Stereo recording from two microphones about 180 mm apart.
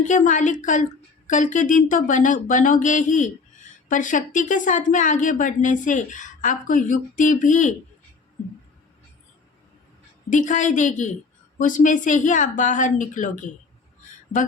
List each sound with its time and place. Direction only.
0.0 s speech: 45° left (ahead or behind)
10.2 s speech: 45° left (ahead or behind)